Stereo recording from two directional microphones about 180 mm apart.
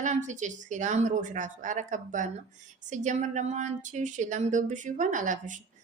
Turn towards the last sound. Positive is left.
turn(degrees=-45)  # may be behind; listen again after turning